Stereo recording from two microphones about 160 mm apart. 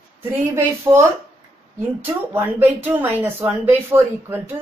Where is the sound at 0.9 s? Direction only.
20° right (ahead or behind).